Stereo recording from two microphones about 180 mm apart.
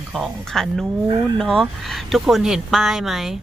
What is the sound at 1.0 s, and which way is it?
Speech, 25° right (ahead or behind).